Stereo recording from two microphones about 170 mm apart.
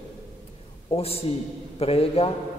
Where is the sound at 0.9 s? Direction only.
35° left (ahead or behind).